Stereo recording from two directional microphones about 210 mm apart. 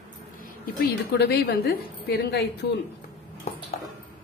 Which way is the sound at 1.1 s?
50° left (ahead or behind).